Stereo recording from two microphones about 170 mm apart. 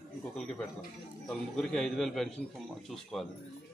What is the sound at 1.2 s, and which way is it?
Speech, 5° left (ahead or behind).